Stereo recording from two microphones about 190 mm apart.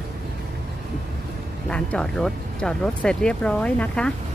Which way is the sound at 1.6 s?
5° left (ahead or behind).